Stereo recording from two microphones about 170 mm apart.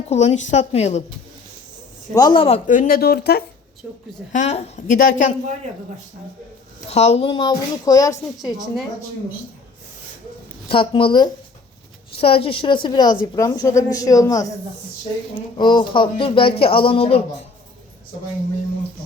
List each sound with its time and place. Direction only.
0.1 s speech: 40° left (ahead or behind)
2.1 s speech: 25° left (ahead or behind)
2.6 s speech: 50° left (ahead or behind)
4.3 s a woman's voice: 45° left (ahead or behind)
6.9 s speech: 40° left (ahead or behind); by 8.2 s 20° left (ahead or behind)
8.4 s a woman's voice: centre (ahead or behind)
10.7 s speech: 30° left (ahead or behind)
15.5 s speech: 25° left (ahead or behind)